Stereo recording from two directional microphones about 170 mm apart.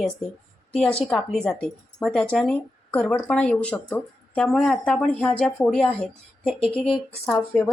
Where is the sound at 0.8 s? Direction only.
5° left (ahead or behind).